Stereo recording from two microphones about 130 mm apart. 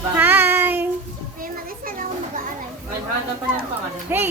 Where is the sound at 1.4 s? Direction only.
90° right.